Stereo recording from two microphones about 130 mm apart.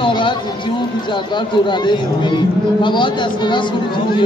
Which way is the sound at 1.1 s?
35° left (ahead or behind).